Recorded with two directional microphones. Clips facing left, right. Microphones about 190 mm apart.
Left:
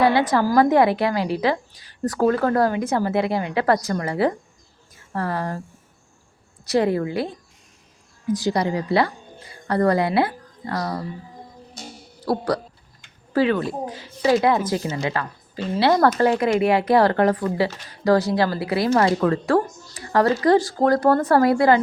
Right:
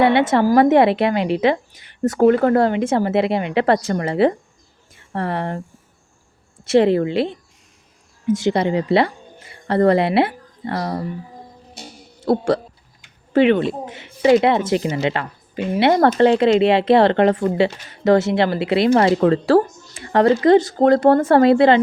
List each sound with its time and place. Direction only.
0.0 s speech: 25° right (ahead or behind)
6.7 s speech: 25° right (ahead or behind)
11.8 s music: 25° right (ahead or behind)
13.3 s speech: 20° right (ahead or behind)